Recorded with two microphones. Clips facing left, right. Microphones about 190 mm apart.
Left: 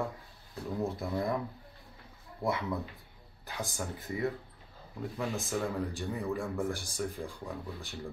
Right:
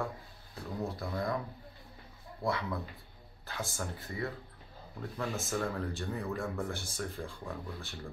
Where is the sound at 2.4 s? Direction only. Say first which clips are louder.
Left 2 dB; 20° left (ahead or behind).